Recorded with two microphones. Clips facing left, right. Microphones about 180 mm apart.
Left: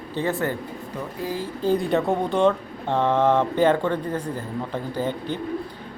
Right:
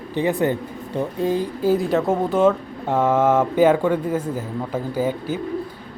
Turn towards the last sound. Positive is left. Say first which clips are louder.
# right 4 dB
turn(degrees=-5)  # may be behind; listen again after turning